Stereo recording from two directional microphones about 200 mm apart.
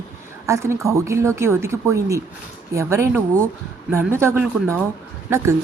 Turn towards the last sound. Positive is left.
turn(degrees=-15)  # may be behind; listen again after turning